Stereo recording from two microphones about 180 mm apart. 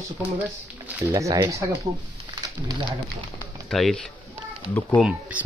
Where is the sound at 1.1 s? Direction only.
20° right (ahead or behind).